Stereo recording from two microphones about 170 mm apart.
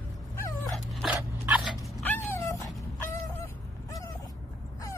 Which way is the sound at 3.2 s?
20° left (ahead or behind).